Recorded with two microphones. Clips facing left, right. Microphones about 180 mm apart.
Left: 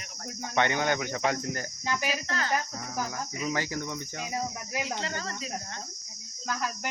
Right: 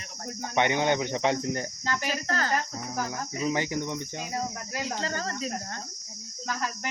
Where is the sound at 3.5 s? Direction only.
20° right (ahead or behind).